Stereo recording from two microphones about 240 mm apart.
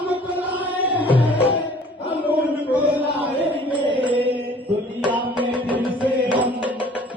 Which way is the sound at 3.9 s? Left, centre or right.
Centre.